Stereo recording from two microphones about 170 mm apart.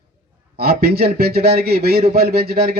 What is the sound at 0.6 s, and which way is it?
A man's voice, 65° right (ahead or behind).